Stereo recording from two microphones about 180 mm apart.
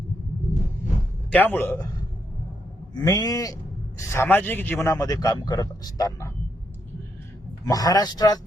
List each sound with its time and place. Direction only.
1.3 s a man's voice: 10° left (ahead or behind)
2.9 s a man's voice: 20° left (ahead or behind)
7.6 s a man's voice: 20° left (ahead or behind)